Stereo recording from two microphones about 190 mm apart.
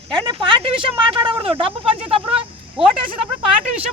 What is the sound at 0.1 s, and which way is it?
Speech, 25° right (ahead or behind).